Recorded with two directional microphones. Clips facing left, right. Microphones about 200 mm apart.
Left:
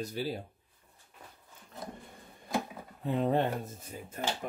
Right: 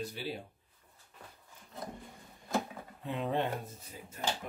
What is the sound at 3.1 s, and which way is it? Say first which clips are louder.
Speech: left 5 dB; 40° left (ahead or behind).